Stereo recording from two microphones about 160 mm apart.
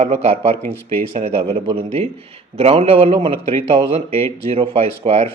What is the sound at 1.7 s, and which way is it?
A man's voice, 35° right (ahead or behind).